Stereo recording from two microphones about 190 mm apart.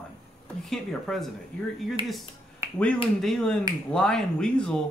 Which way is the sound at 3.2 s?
5° left (ahead or behind).